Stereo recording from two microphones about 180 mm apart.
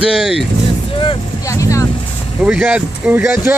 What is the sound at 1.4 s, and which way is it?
Speech, 15° left (ahead or behind).